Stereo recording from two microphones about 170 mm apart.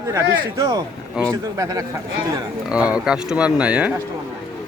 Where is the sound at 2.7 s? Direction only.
5° right (ahead or behind).